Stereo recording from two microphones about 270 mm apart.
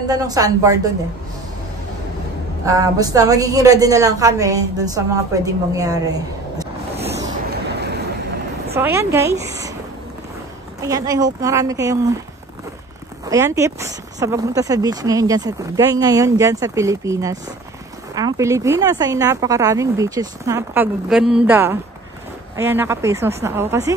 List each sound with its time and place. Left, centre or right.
0.1 s speech: centre
2.6 s a woman's voice: centre
7.4 s vehicle: right
8.7 s speech: centre
10.8 s speech: centre
13.3 s speech: centre